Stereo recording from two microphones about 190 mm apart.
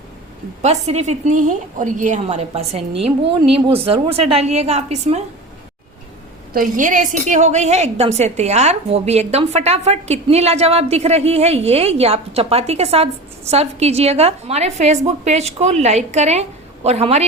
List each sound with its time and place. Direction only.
0.6 s a woman's voice: 35° right (ahead or behind)
6.5 s a woman's voice: 45° right (ahead or behind)